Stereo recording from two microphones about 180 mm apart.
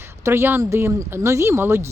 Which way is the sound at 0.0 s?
15° right (ahead or behind).